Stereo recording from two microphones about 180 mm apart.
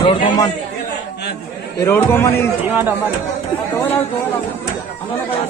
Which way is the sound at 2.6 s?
10° right (ahead or behind).